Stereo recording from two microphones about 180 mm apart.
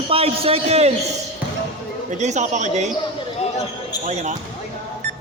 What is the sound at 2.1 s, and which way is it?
Speech, 40° right (ahead or behind).